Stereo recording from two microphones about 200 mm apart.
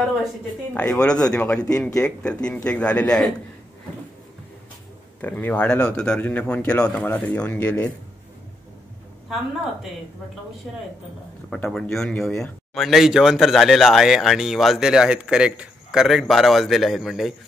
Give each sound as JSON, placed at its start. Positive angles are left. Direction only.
{"t": 0.7, "sound": "speech", "side_deg": 5}
{"t": 5.2, "sound": "speech", "side_deg": 10}
{"t": 10.7, "sound": "speech", "side_deg": 0}